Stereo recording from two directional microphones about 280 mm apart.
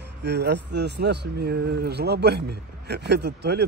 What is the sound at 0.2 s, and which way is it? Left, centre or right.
Speech, right.